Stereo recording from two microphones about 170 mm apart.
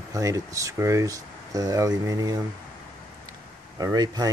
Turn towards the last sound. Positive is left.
turn(degrees=-20)  # may be behind; listen again after turning